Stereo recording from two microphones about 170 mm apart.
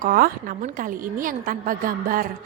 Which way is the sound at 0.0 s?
55° right (ahead or behind).